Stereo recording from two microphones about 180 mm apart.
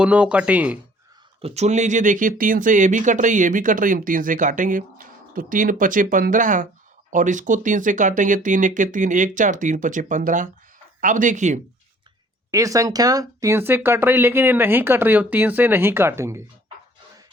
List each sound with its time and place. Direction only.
0.0 s speech: 5° right (ahead or behind)
1.4 s speech: 35° right (ahead or behind)
12.5 s speech: 20° right (ahead or behind)